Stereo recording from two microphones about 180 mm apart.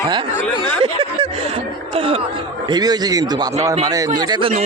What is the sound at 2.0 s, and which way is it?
A man's voice, 30° right (ahead or behind).